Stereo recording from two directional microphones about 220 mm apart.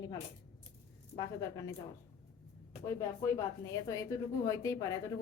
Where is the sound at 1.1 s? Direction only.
15° left (ahead or behind).